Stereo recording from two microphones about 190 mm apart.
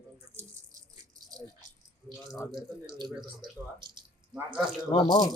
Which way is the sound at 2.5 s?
25° right (ahead or behind).